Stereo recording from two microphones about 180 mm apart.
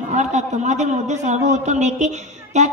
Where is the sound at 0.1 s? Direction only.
40° right (ahead or behind).